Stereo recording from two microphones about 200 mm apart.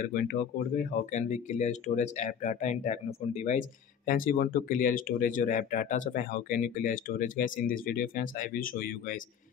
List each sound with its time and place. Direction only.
0.0 s speech: 45° left (ahead or behind)